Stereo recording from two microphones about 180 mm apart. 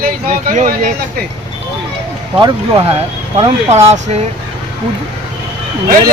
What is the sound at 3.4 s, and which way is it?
Speech, 35° right (ahead or behind).